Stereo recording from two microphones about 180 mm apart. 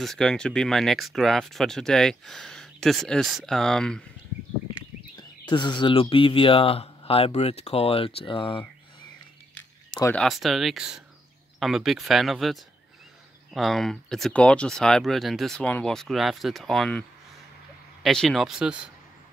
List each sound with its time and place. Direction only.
0.0 s speech: 5° left (ahead or behind)
5.4 s speech: 25° left (ahead or behind)
10.1 s speech: centre (ahead or behind)
18.0 s speech: centre (ahead or behind)